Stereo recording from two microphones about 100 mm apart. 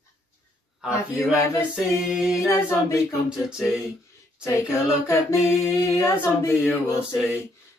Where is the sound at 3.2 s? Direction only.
5° right (ahead or behind).